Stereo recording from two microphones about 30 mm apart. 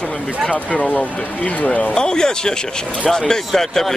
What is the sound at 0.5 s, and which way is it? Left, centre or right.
Speech, left.